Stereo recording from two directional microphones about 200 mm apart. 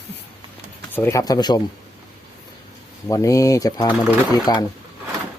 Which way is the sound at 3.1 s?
15° left (ahead or behind).